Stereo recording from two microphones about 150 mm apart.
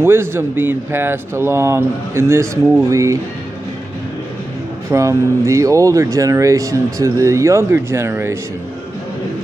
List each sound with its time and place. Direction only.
0.0 s speech: 15° right (ahead or behind)
4.9 s speech: 20° right (ahead or behind)